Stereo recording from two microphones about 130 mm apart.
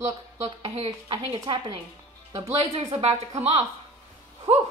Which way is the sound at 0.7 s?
40° right (ahead or behind).